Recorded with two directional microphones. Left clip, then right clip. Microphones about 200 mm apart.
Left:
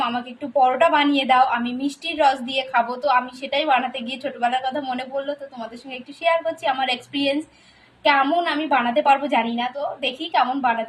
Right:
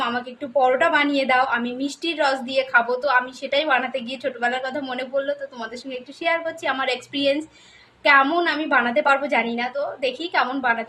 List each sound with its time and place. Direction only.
0.6 s a woman's voice: 15° right (ahead or behind)